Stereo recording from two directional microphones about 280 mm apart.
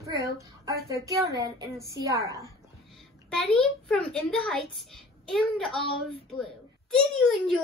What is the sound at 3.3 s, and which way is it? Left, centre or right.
A woman's voice, centre.